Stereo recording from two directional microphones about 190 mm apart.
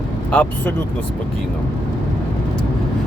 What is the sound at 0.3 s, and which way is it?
Speech, 5° left (ahead or behind).